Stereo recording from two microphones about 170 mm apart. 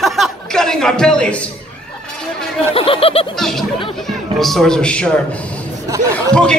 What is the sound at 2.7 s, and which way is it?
Speech, 35° left (ahead or behind).